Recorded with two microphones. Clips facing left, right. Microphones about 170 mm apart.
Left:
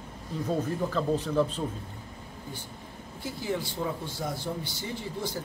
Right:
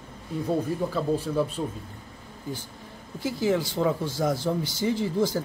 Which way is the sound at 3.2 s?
90° right.